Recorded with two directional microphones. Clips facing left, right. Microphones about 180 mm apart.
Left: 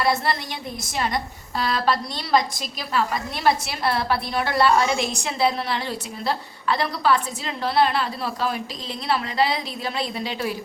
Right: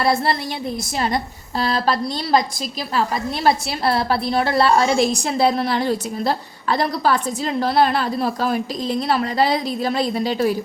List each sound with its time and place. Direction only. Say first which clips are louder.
0.0 s a woman's voice: right 4 dB; 30° right (ahead or behind)
3.4 s a woman's voice: right 3 dB; 30° right (ahead or behind)